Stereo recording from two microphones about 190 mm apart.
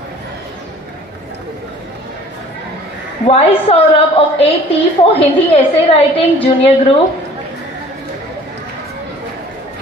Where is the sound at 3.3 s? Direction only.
30° left (ahead or behind).